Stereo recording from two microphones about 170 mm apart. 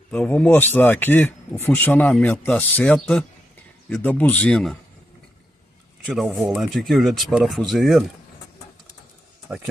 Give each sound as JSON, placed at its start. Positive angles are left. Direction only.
{"t": 0.1, "sound": "speech", "side_deg": 10}
{"t": 6.0, "sound": "speech", "side_deg": -5}
{"t": 9.5, "sound": "speech", "side_deg": -5}